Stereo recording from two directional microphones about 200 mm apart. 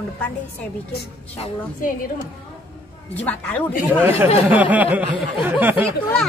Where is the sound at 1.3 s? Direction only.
30° left (ahead or behind).